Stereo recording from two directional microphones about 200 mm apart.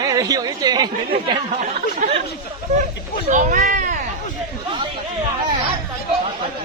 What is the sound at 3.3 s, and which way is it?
Speech, 40° right (ahead or behind).